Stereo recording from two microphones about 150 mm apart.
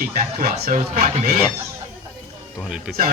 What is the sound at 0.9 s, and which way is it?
Speech, 85° right.